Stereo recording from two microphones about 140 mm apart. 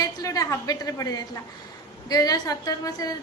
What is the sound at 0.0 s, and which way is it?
A woman's voice, 25° left (ahead or behind).